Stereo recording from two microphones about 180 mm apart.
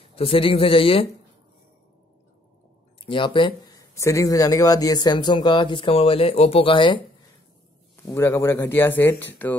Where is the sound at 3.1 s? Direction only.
30° left (ahead or behind).